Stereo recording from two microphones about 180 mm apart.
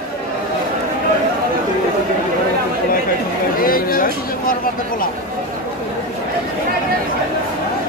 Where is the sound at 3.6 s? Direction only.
55° left (ahead or behind).